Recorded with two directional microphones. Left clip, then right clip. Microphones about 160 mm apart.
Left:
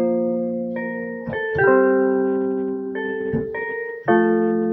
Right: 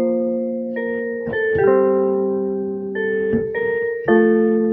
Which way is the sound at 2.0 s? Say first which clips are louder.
Right 1 dB; 10° left (ahead or behind).